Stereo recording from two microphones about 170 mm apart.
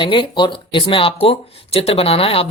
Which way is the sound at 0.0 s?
30° left (ahead or behind).